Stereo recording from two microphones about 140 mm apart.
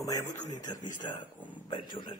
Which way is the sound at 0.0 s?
25° left (ahead or behind).